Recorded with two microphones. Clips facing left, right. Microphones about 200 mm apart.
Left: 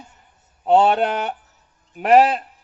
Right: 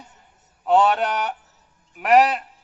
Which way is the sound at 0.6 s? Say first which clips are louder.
Left 2 dB; 30° left (ahead or behind).